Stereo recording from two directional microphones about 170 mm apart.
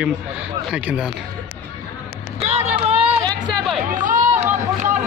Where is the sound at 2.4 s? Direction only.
40° right (ahead or behind).